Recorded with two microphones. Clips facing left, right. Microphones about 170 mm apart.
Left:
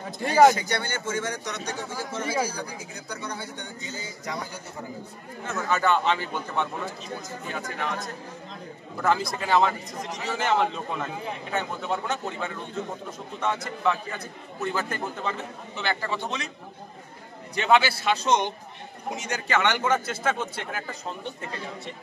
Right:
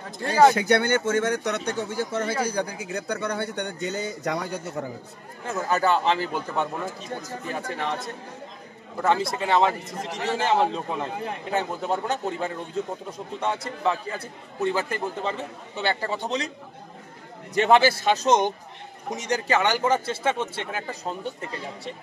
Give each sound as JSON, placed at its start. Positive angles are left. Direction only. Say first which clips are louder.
{"t": 0.6, "sound": "a man's voice", "louder": "right 9 dB", "side_deg": -55}
{"t": 5.5, "sound": "a man's voice", "louder": "right 1 dB", "side_deg": -35}
{"t": 9.9, "sound": "a man's voice", "louder": "right 3 dB", "side_deg": -60}
{"t": 10.3, "sound": "a man's voice", "louder": "right 2 dB", "side_deg": -30}
{"t": 17.6, "sound": "a man's voice", "louder": "right 3 dB", "side_deg": -40}